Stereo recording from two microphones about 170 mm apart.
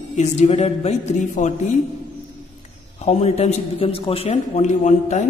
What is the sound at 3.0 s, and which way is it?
A man's voice, 35° left (ahead or behind).